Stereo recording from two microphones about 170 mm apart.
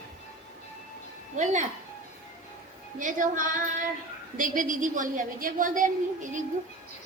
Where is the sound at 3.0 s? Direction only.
50° right (ahead or behind).